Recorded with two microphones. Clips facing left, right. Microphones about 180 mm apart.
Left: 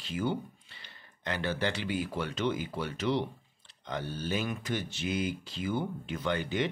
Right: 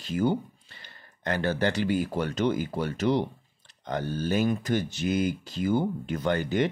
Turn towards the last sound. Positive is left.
turn(degrees=-45)  # may be behind; listen again after turning